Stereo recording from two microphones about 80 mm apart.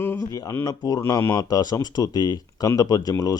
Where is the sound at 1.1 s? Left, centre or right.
Left.